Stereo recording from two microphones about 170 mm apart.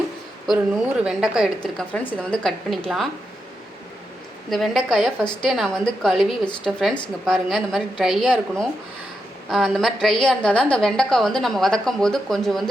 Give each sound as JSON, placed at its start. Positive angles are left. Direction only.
{"t": 1.0, "sound": "a woman's voice", "side_deg": -5}
{"t": 4.4, "sound": "a woman's voice", "side_deg": 0}